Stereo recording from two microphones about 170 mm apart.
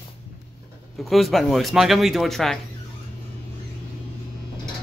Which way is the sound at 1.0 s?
Centre (ahead or behind).